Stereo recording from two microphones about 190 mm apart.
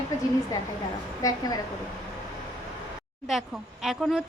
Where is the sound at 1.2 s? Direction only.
20° left (ahead or behind).